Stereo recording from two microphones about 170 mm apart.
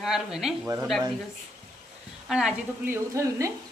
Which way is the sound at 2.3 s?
5° right (ahead or behind).